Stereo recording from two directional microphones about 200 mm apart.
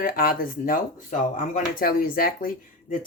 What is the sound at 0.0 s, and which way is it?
Speech, 45° left (ahead or behind).